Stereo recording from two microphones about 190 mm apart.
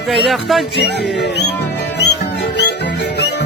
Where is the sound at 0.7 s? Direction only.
60° left (ahead or behind).